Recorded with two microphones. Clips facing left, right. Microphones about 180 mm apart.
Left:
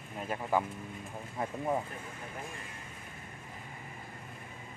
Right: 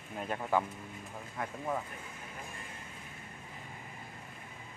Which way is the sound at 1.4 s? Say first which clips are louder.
Left 4 dB; 25° left (ahead or behind).